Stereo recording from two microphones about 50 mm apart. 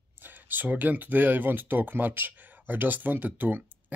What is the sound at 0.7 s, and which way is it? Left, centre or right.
Speech, right.